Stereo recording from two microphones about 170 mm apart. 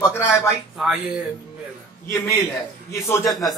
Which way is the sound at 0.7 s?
5° right (ahead or behind).